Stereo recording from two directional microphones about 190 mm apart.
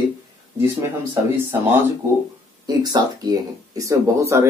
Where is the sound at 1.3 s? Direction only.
10° right (ahead or behind).